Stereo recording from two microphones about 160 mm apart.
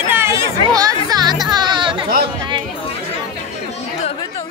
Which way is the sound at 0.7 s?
20° right (ahead or behind).